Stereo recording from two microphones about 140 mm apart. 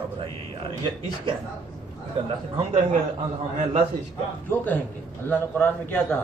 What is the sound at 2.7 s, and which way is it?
Speech, 50° right (ahead or behind).